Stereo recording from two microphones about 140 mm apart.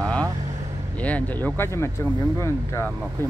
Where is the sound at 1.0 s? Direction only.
10° left (ahead or behind).